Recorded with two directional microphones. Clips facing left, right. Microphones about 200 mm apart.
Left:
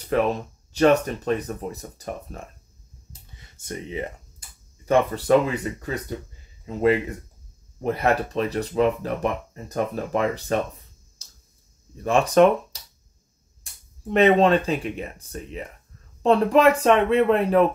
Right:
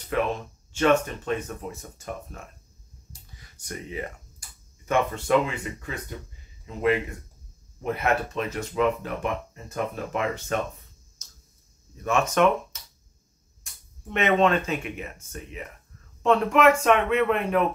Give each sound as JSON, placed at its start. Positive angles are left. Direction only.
{"t": 0.7, "sound": "speech", "side_deg": 35}
{"t": 3.3, "sound": "speech", "side_deg": 25}
{"t": 11.2, "sound": "tick-tock", "side_deg": 30}
{"t": 12.0, "sound": "speech", "side_deg": 35}
{"t": 13.7, "sound": "a sound", "side_deg": 35}
{"t": 14.0, "sound": "speech", "side_deg": 35}